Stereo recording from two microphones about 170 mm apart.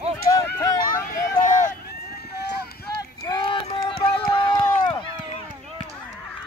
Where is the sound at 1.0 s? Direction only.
50° left (ahead or behind).